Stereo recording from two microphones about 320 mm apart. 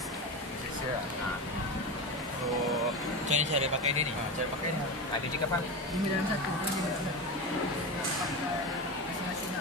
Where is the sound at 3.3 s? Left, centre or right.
Right.